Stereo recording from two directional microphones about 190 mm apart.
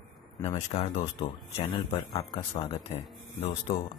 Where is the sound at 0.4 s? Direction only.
35° left (ahead or behind).